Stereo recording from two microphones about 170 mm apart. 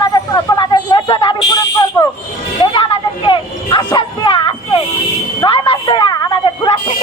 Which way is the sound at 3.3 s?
25° left (ahead or behind).